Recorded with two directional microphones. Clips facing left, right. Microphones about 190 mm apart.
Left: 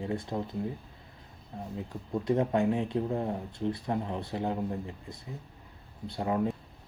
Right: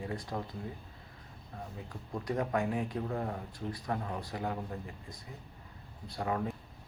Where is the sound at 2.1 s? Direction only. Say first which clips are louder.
Left 6 dB; 25° left (ahead or behind).